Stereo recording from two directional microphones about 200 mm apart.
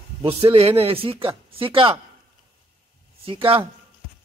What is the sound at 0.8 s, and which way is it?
Speech, 30° right (ahead or behind).